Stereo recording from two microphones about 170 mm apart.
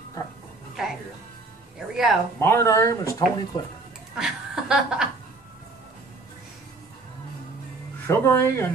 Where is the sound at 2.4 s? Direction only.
15° left (ahead or behind).